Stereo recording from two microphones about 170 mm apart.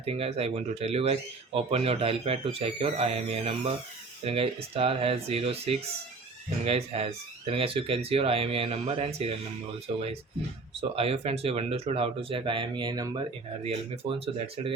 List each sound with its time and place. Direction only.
0.0 s speech: 35° right (ahead or behind)
10.8 s speech: 35° right (ahead or behind)